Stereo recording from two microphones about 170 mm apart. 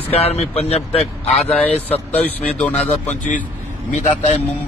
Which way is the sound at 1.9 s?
10° left (ahead or behind).